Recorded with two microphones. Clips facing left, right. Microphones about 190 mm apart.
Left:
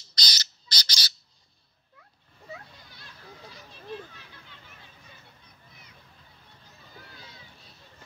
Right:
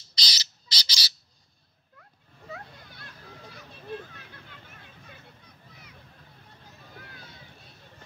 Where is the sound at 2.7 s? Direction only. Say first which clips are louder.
Right 3 dB; 55° right (ahead or behind).